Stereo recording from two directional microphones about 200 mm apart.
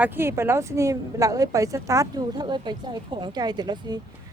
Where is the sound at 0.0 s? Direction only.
10° right (ahead or behind).